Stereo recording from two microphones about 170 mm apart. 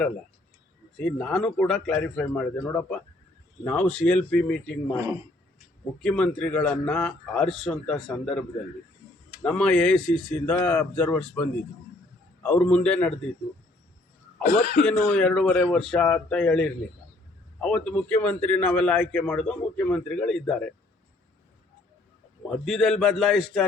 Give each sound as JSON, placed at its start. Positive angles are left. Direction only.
{"t": 0.9, "sound": "a man's voice", "side_deg": 5}
{"t": 6.0, "sound": "a man's voice", "side_deg": 5}
{"t": 14.4, "sound": "speech", "side_deg": 55}
{"t": 14.8, "sound": "a man's voice", "side_deg": 5}
{"t": 22.4, "sound": "a man's voice", "side_deg": 0}